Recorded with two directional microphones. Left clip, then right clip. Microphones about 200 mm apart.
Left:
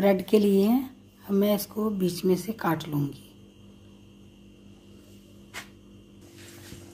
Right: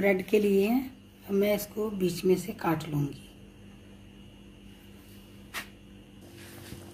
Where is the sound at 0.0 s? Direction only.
45° left (ahead or behind).